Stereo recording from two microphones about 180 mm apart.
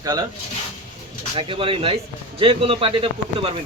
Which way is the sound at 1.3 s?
30° right (ahead or behind).